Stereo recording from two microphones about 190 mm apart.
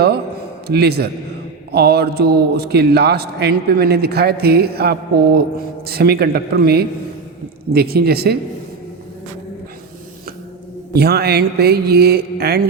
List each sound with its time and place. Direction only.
0.7 s a man's voice: 55° right (ahead or behind)
10.9 s a man's voice: 55° right (ahead or behind)